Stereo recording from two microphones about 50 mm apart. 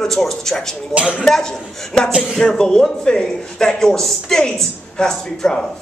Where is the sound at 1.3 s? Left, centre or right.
Centre.